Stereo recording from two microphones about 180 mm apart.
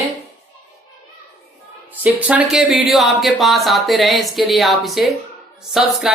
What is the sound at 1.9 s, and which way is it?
Speech, 10° right (ahead or behind).